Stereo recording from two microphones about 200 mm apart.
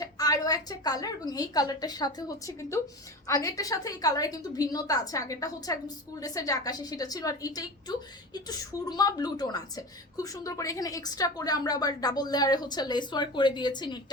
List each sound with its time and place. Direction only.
0.0 s a woman's voice: 20° left (ahead or behind)